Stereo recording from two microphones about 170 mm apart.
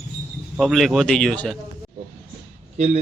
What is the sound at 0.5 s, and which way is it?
Speech, centre (ahead or behind).